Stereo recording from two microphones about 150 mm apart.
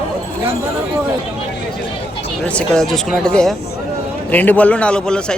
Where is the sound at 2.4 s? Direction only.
10° left (ahead or behind).